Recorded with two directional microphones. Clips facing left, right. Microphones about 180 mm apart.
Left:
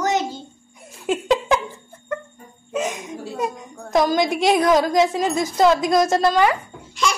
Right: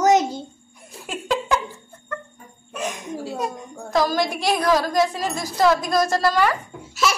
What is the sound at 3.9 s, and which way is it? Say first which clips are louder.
A woman's voice: left 3 dB; 20° left (ahead or behind).